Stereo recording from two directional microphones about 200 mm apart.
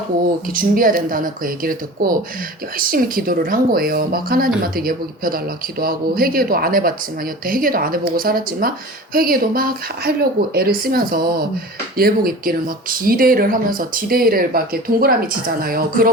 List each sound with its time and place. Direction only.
0.4 s speech: 45° right (ahead or behind)